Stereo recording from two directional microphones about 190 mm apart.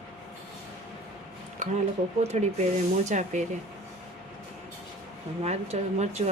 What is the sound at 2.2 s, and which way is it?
Speech, 35° right (ahead or behind).